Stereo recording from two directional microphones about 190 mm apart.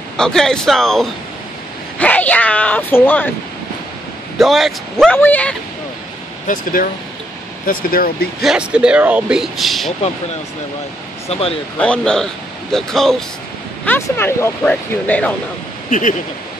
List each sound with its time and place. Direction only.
0.2 s speech: 5° left (ahead or behind)
4.4 s speech: centre (ahead or behind)
6.4 s speech: 45° left (ahead or behind)
8.4 s speech: 5° right (ahead or behind)
11.2 s speech: 30° left (ahead or behind)
11.8 s speech: 5° left (ahead or behind)
13.8 s speech: 15° left (ahead or behind)
15.9 s speech: 40° left (ahead or behind)